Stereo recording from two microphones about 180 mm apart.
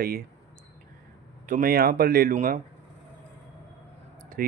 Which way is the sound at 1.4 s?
50° right (ahead or behind).